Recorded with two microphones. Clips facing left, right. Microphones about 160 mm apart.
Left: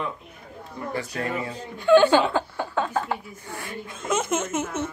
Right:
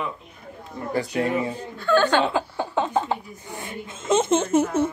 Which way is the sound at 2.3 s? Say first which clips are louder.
Right 1 dB; 20° right (ahead or behind).